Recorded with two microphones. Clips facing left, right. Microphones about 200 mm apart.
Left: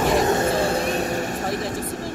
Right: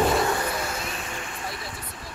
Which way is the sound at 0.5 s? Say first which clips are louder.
Left 10 dB; 35° left (ahead or behind).